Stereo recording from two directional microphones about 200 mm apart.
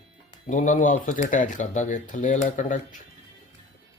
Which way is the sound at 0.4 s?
40° left (ahead or behind).